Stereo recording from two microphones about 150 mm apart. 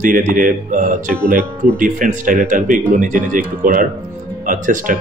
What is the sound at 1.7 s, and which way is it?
Speech, 60° right (ahead or behind).